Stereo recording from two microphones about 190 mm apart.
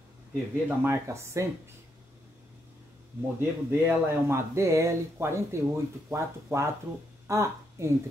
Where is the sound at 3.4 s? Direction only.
10° right (ahead or behind).